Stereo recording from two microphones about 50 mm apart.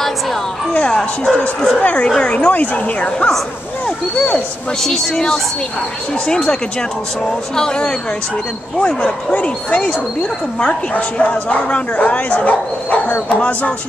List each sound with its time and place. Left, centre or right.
0.7 s speech: centre
1.8 s speech: left
4.8 s speech: centre; by 13.7 s left